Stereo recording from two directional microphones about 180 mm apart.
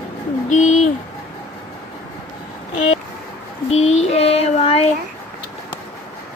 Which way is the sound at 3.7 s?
35° left (ahead or behind).